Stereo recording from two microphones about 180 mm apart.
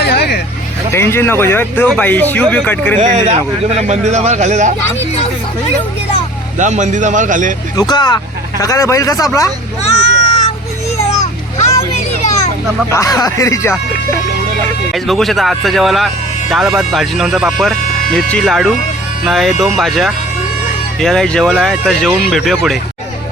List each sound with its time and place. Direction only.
0.0 s vehicle: 65° left (ahead or behind)
0.9 s speech: 15° left (ahead or behind)
3.0 s speech: 40° right (ahead or behind)
6.6 s a man's voice: 40° right (ahead or behind)
7.8 s speech: 25° left (ahead or behind)
9.8 s a sound: 40° left (ahead or behind)
12.9 s speech: 20° left (ahead or behind)
14.9 s speech: centre (ahead or behind)